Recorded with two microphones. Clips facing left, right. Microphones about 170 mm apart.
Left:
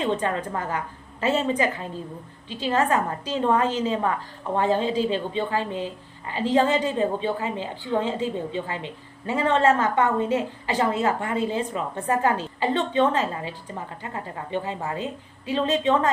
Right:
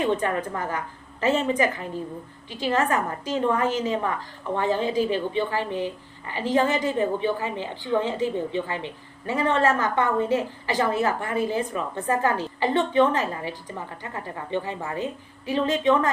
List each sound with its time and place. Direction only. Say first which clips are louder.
0.2 s a woman's voice: even; 25° left (ahead or behind)